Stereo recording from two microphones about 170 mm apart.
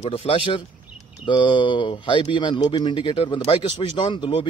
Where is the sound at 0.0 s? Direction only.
35° left (ahead or behind).